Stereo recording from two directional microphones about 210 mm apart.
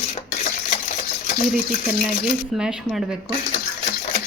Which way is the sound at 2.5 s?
5° right (ahead or behind).